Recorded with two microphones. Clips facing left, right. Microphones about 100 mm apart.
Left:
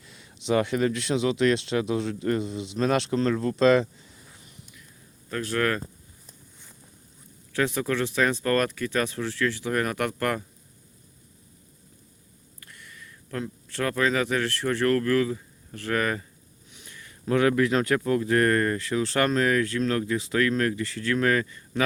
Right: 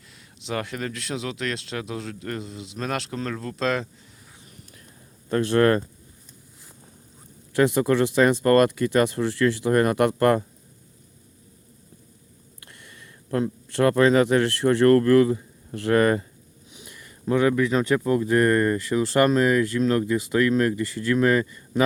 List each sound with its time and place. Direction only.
0.1 s speech: centre (ahead or behind)
5.3 s speech: 30° right (ahead or behind)
7.5 s speech: 15° right (ahead or behind)
12.6 s speech: 25° right (ahead or behind)
16.7 s a sound: 15° right (ahead or behind)
17.5 s speech: centre (ahead or behind)
17.9 s speech: 15° right (ahead or behind)
18.9 s speech: 5° right (ahead or behind)
20.8 s speech: 5° right (ahead or behind)
21.2 s speech: 15° right (ahead or behind)